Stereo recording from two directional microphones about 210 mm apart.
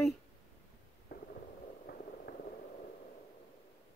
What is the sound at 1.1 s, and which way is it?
Stomach rumble, 50° left (ahead or behind).